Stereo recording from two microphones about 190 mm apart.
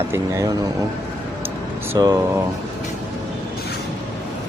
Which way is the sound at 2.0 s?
20° right (ahead or behind).